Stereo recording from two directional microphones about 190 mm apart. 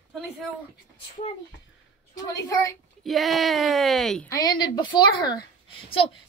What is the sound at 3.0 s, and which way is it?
Speech, centre (ahead or behind).